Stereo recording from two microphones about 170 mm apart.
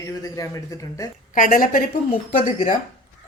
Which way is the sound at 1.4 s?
55° left (ahead or behind).